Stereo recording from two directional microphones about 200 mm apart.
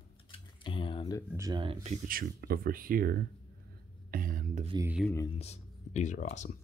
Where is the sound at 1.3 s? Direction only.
20° right (ahead or behind).